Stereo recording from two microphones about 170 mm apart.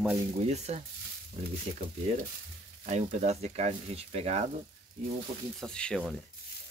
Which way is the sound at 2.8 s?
45° right (ahead or behind).